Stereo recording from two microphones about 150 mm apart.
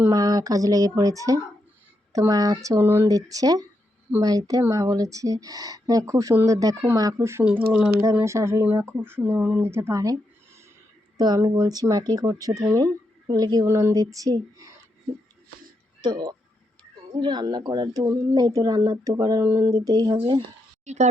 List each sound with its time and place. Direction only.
0.0 s speech: 25° right (ahead or behind)
11.2 s speech: 25° right (ahead or behind)
16.0 s speech: 30° right (ahead or behind)
20.8 s speech: 50° right (ahead or behind)